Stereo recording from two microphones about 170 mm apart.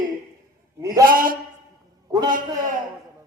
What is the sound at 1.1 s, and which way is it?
Speech, 55° right (ahead or behind).